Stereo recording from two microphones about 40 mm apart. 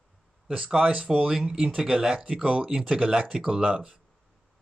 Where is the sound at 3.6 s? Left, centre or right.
Right.